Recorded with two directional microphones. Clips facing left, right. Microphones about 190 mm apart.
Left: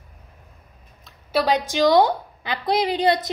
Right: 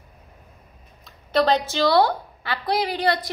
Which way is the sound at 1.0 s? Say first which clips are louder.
Right 1 dB; 10° left (ahead or behind).